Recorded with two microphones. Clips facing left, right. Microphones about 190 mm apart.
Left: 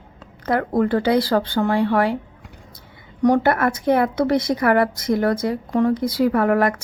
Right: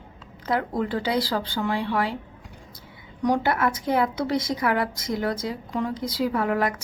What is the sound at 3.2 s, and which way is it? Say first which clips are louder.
A woman's voice: left 6 dB; 55° left (ahead or behind).